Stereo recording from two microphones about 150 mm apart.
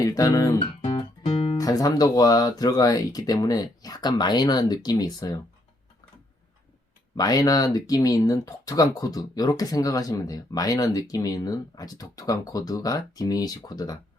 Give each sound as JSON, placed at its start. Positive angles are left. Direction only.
{"t": 0.0, "sound": "speech", "side_deg": 25}
{"t": 0.9, "sound": "music", "side_deg": 40}
{"t": 1.5, "sound": "speech", "side_deg": 25}
{"t": 7.2, "sound": "speech", "side_deg": 25}